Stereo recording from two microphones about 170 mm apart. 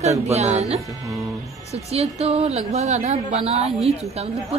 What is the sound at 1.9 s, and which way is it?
A woman's voice, 40° right (ahead or behind).